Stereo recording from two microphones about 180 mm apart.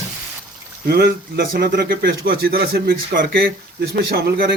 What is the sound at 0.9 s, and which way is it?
Speech, 60° right (ahead or behind).